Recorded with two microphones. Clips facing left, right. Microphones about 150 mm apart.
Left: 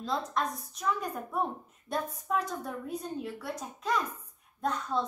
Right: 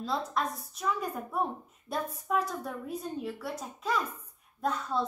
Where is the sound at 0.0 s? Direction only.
5° right (ahead or behind).